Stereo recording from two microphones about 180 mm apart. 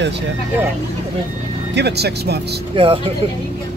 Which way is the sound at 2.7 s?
30° right (ahead or behind).